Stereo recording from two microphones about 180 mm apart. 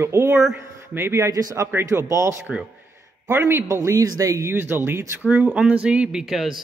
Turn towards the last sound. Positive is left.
turn(degrees=0)  # may be behind; listen again after turning